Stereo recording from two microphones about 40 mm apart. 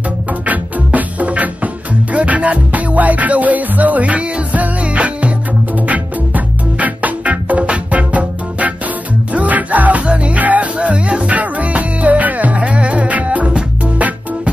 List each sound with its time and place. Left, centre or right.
0.3 s music: right